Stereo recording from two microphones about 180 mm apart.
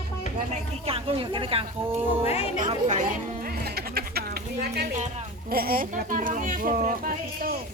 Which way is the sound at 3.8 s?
60° right (ahead or behind).